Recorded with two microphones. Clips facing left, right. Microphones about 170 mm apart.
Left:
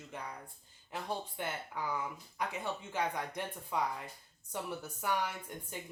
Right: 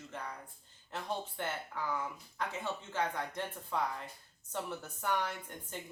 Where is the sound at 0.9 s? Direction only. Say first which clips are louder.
Even; 10° left (ahead or behind).